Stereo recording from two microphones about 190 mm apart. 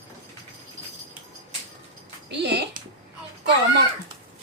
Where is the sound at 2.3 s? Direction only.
65° right (ahead or behind).